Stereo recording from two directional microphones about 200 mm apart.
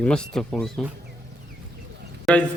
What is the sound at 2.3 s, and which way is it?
Speech, centre (ahead or behind).